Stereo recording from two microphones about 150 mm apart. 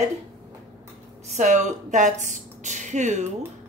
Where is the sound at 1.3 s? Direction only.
50° right (ahead or behind).